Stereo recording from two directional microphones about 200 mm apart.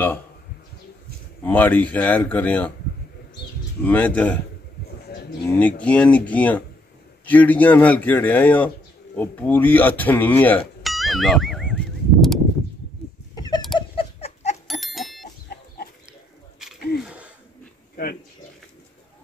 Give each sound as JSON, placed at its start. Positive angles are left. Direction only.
{"t": 1.4, "sound": "a man's voice", "side_deg": 10}
{"t": 3.8, "sound": "a man's voice", "side_deg": 5}
{"t": 5.4, "sound": "a man's voice", "side_deg": 5}
{"t": 10.8, "sound": "a sound", "side_deg": 0}
{"t": 13.3, "sound": "a sound", "side_deg": 20}
{"t": 14.7, "sound": "bicycle bell", "side_deg": 0}
{"t": 17.0, "sound": "wheeze", "side_deg": -5}